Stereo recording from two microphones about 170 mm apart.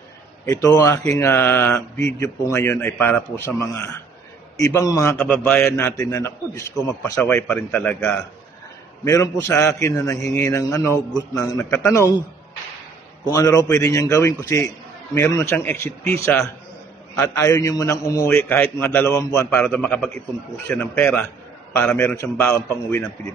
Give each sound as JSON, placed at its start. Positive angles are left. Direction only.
{"t": 0.5, "sound": "a man's voice", "side_deg": 20}
{"t": 13.2, "sound": "a man's voice", "side_deg": 20}
{"t": 17.2, "sound": "a man's voice", "side_deg": 15}